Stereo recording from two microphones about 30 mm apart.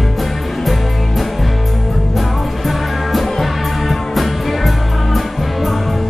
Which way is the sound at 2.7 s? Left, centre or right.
Centre.